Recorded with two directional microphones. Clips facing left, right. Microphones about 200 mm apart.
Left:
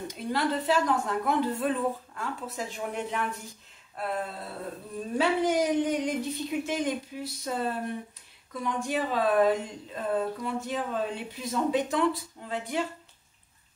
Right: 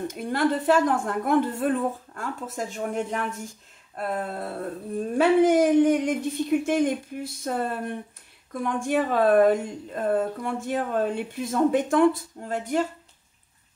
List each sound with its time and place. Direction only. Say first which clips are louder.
0.1 s speech: right 3 dB; 50° right (ahead or behind)